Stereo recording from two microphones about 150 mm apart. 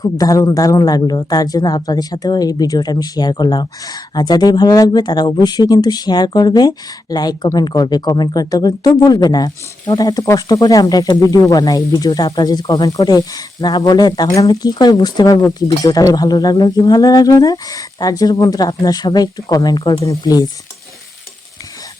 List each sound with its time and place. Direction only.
0.0 s a man's voice: 25° left (ahead or behind)